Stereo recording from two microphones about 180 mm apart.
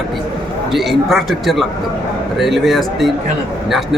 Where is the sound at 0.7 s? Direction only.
Centre (ahead or behind).